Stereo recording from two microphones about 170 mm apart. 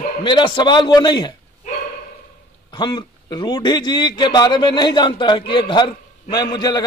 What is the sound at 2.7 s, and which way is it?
A man's voice, 25° left (ahead or behind).